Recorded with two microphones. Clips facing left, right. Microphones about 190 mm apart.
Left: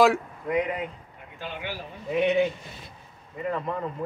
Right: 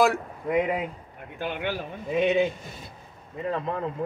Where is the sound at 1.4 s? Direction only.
60° right (ahead or behind).